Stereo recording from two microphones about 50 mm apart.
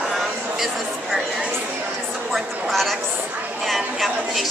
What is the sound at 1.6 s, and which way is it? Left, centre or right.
Chatter, right.